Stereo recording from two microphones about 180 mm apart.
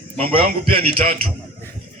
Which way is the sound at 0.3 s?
55° right (ahead or behind).